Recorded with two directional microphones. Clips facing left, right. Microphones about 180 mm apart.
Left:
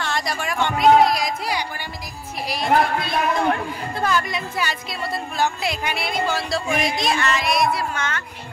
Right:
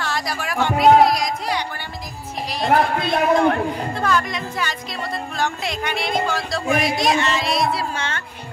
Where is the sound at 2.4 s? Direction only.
10° left (ahead or behind).